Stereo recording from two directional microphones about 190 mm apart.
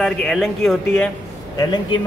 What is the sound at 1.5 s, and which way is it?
Speech, 20° left (ahead or behind).